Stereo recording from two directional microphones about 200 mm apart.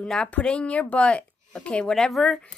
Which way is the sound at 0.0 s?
5° left (ahead or behind).